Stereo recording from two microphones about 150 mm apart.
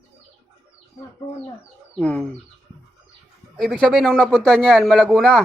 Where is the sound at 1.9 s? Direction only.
10° left (ahead or behind).